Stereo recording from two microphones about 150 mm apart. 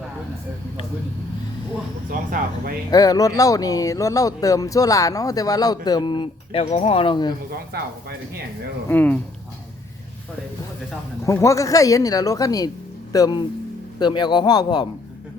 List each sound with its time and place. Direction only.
2.9 s speech: 25° left (ahead or behind)
7.7 s speech: 90° right
8.9 s speech: 10° left (ahead or behind)
11.3 s speech: 20° left (ahead or behind)